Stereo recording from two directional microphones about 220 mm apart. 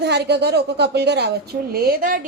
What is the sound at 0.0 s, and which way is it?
A woman's voice, 50° right (ahead or behind).